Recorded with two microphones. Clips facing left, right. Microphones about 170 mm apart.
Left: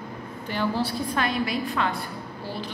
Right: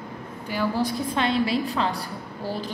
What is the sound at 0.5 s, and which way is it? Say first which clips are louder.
A woman's voice: right 1 dB; 10° right (ahead or behind).